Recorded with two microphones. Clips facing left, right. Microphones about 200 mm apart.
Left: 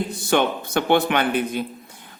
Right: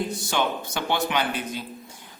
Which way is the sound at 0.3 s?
55° left (ahead or behind).